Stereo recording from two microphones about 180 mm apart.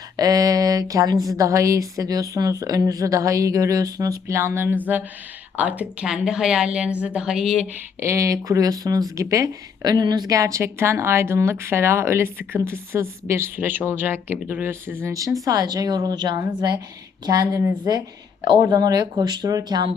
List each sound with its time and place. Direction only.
0.2 s a sound: 20° right (ahead or behind)
1.4 s a woman's voice: 15° right (ahead or behind); by 7.7 s centre (ahead or behind)
7.9 s a woman's voice: 15° right (ahead or behind)